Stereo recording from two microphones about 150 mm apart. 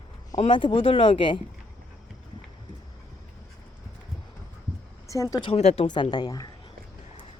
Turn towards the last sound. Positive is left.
turn(degrees=25)  # may be behind; listen again after turning